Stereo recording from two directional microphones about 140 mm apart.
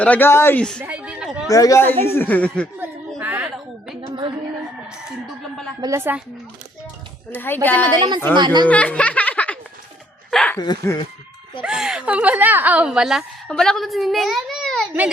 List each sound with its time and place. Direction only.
0.0 s speech: 15° left (ahead or behind)
0.8 s a sound: 10° right (ahead or behind)
1.5 s speech: 25° left (ahead or behind)
3.2 s a sound: 15° right (ahead or behind)
4.0 s a sound: 35° right (ahead or behind)
5.8 s a woman's voice: 20° right (ahead or behind)
7.3 s speech: 15° left (ahead or behind)
7.9 s a woman's voice: 35° right (ahead or behind)
8.6 s speech: 10° left (ahead or behind)
10.6 s speech: 30° left (ahead or behind)
11.6 s a woman's voice: 5° right (ahead or behind)